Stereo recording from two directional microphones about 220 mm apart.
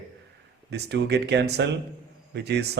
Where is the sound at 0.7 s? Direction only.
50° right (ahead or behind).